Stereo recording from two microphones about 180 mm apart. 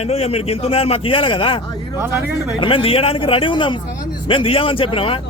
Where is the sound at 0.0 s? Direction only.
35° left (ahead or behind).